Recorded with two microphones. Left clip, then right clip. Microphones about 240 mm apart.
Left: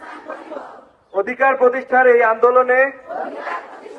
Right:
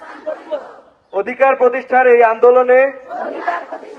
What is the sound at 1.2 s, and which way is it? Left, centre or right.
A man's voice, right.